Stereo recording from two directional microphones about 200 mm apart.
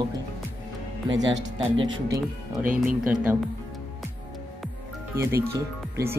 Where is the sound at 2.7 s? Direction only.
5° right (ahead or behind).